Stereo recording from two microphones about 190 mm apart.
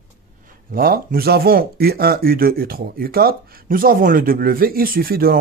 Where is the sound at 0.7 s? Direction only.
50° right (ahead or behind).